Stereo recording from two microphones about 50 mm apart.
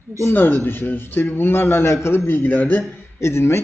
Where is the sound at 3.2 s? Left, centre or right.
Left.